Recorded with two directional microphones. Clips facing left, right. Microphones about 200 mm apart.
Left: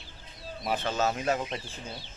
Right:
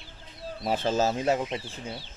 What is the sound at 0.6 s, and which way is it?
Speech, 30° right (ahead or behind).